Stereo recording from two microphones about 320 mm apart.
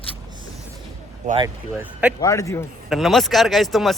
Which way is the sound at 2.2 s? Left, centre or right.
Centre.